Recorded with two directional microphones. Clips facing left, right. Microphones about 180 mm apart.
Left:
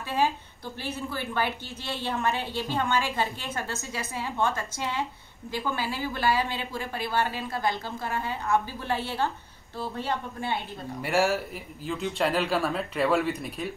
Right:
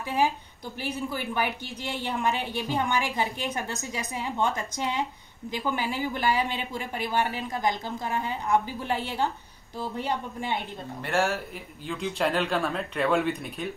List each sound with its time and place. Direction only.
0.0 s a woman's voice: 15° right (ahead or behind)
11.0 s a man's voice: 5° left (ahead or behind)